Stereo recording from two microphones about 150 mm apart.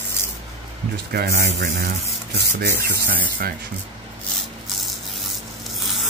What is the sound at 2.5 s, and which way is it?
Rub, 90° right.